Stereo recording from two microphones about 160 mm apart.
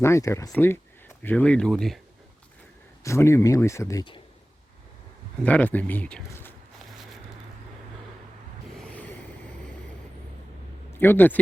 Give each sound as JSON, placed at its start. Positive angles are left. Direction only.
{"t": 0.0, "sound": "speech", "side_deg": 20}
{"t": 3.0, "sound": "speech", "side_deg": 20}
{"t": 5.4, "sound": "speech", "side_deg": 10}
{"t": 8.9, "sound": "ocean", "side_deg": 10}
{"t": 10.9, "sound": "speech", "side_deg": 15}